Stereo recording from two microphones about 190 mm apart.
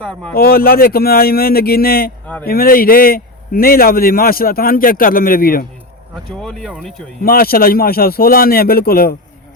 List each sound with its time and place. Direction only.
0.0 s speech: 5° left (ahead or behind)
0.3 s a man's voice: 50° left (ahead or behind)
2.2 s speech: 10° left (ahead or behind)
2.5 s a man's voice: 50° left (ahead or behind)
6.4 s speech: centre (ahead or behind)
7.2 s a man's voice: 50° left (ahead or behind)